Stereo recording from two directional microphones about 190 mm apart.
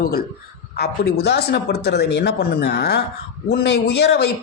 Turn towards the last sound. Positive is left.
turn(degrees=60)  # may be behind; listen again after turning